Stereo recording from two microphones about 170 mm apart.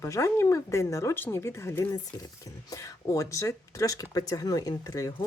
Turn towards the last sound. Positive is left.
turn(degrees=20)  # may be behind; listen again after turning